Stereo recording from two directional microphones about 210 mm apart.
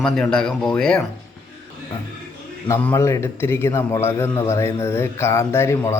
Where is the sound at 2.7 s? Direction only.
10° left (ahead or behind).